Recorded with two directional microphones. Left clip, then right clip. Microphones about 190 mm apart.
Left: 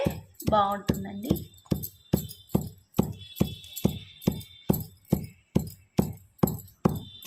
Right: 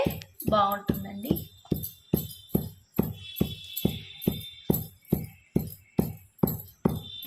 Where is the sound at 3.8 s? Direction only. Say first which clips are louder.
Left 1 dB; centre (ahead or behind).